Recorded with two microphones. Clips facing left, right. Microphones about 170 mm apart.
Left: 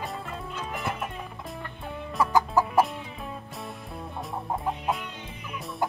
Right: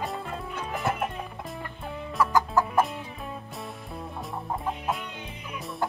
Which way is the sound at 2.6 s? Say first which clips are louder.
Left 2 dB; centre (ahead or behind).